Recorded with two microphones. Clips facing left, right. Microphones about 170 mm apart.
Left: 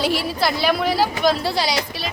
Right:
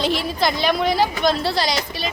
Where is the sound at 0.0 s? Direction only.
5° left (ahead or behind).